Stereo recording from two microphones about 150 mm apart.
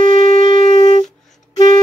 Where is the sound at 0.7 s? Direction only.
30° left (ahead or behind).